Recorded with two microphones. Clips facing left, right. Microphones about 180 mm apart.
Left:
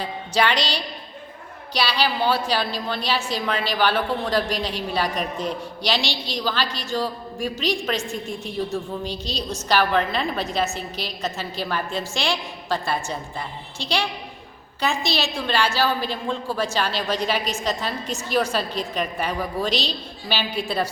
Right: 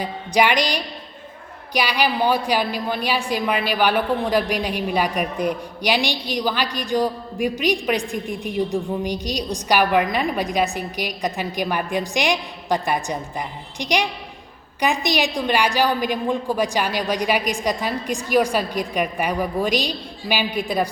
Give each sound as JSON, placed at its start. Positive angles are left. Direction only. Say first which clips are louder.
{"t": 0.0, "sound": "a woman's voice", "louder": "right 3 dB", "side_deg": -15}